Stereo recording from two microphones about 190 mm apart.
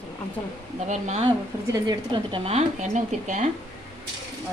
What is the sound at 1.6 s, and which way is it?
A woman's voice, 20° right (ahead or behind).